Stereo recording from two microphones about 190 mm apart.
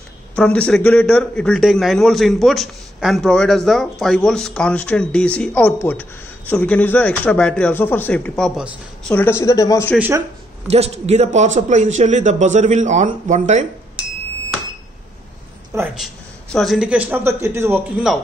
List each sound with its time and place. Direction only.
0.4 s a man's voice: 5° left (ahead or behind)
9.1 s speech: 10° left (ahead or behind)
9.9 s speech: 10° right (ahead or behind)
10.7 s a man's voice: 35° right (ahead or behind)
16.0 s speech: centre (ahead or behind)